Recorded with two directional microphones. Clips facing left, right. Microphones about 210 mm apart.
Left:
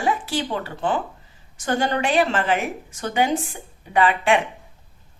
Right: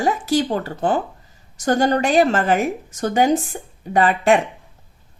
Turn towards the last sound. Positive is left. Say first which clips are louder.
# right 3 dB
turn(degrees=-40)  # may be behind; listen again after turning